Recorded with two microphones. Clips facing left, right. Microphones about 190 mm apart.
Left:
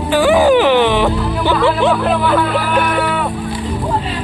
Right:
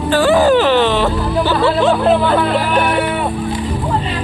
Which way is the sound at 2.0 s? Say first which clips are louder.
Right 2 dB; 25° right (ahead or behind).